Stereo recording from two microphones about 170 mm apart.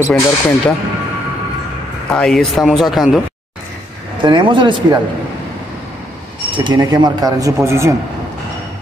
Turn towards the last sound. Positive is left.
turn(degrees=-15)  # may be behind; listen again after turning